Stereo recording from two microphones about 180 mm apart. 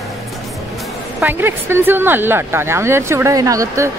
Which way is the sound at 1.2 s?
10° right (ahead or behind).